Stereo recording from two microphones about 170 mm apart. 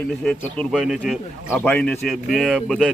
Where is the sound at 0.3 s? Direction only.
5° left (ahead or behind).